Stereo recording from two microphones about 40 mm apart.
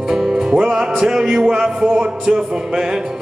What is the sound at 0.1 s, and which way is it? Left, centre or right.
Music, centre.